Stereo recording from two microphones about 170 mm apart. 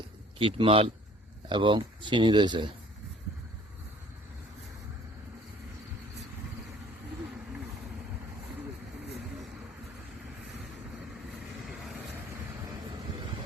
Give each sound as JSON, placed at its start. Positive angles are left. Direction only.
{"t": 0.3, "sound": "speech", "side_deg": -30}